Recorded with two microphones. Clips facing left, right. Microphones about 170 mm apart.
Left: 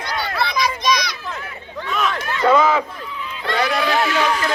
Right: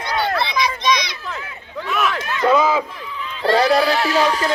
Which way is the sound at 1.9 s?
5° right (ahead or behind).